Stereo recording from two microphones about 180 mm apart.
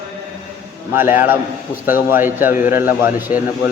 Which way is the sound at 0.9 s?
10° right (ahead or behind).